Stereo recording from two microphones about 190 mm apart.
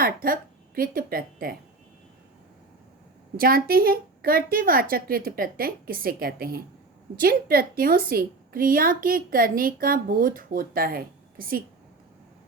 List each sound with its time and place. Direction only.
0.0 s a woman's voice: 50° right (ahead or behind)
3.3 s a woman's voice: 50° right (ahead or behind)